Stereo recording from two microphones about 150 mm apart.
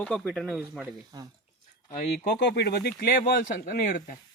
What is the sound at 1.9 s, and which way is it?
Speech, 75° left (ahead or behind).